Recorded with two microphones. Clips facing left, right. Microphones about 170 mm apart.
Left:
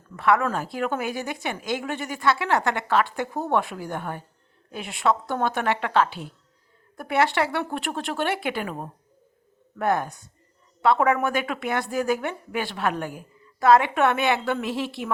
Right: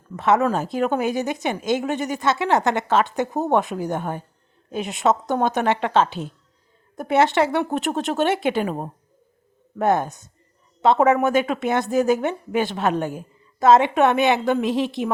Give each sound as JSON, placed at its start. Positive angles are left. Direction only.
{"t": 0.2, "sound": "a woman's voice", "side_deg": -20}